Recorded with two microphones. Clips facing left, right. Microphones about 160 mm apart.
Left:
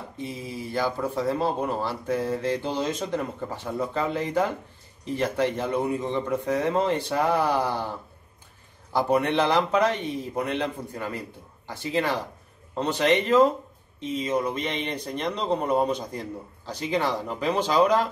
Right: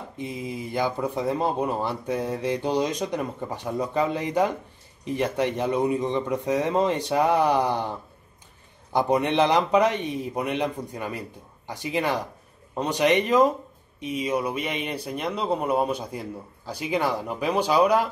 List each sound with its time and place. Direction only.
0.2 s speech: 15° right (ahead or behind)
8.9 s speech: 20° right (ahead or behind)